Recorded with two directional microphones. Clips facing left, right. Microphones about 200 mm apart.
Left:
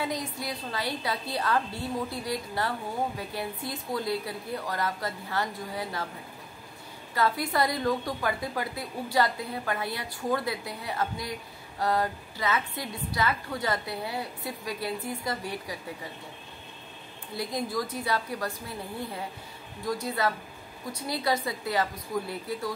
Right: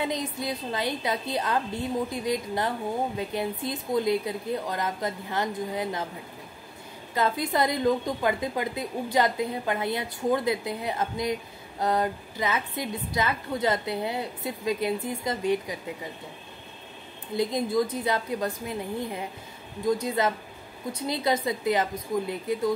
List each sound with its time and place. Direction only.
0.0 s a woman's voice: 20° right (ahead or behind)
7.2 s a woman's voice: 20° right (ahead or behind)
17.4 s a woman's voice: 20° right (ahead or behind)